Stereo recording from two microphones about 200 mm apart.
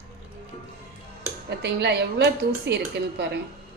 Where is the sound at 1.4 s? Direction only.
55° right (ahead or behind).